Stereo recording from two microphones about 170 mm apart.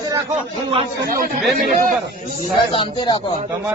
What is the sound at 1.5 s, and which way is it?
Speech, 50° right (ahead or behind).